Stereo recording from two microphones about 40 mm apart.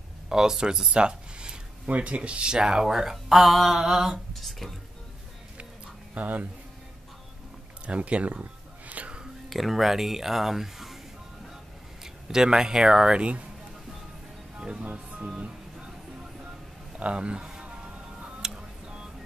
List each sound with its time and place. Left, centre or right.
0.3 s speech: centre
1.9 s speech: right; by 4.2 s centre
4.3 s a sound: centre
6.1 s speech: right
7.8 s a sound: right
9.5 s speech: centre
12.0 s speech: centre
13.2 s speech: right
14.6 s music: right
17.0 s speech: right
18.4 s music: centre